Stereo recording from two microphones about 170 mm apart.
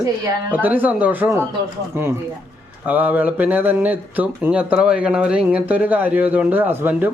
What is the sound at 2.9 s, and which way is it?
Speech, 10° right (ahead or behind).